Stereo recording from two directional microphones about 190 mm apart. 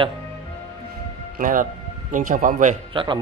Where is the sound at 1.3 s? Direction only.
45° right (ahead or behind).